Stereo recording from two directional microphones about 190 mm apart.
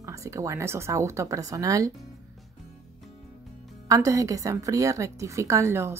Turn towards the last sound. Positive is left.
turn(degrees=-15)  # may be behind; listen again after turning